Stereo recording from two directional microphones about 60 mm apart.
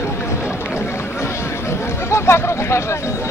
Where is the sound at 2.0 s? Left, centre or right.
Left.